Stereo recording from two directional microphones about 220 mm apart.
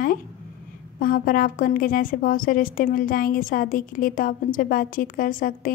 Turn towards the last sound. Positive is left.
turn(degrees=40)  # may be behind; listen again after turning